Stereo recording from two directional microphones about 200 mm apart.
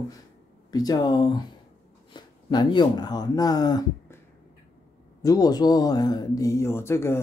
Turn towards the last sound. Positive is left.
turn(degrees=15)  # may be behind; listen again after turning